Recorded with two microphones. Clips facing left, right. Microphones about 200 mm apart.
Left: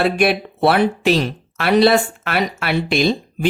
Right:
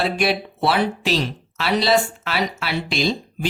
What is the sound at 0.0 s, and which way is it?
Speech, 55° left (ahead or behind).